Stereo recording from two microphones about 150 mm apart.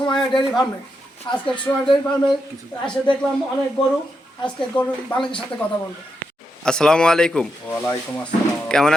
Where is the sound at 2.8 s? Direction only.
5° left (ahead or behind).